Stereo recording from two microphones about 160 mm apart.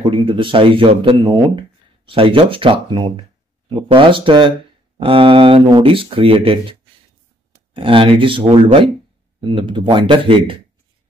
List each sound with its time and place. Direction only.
0.0 s speech: 30° right (ahead or behind)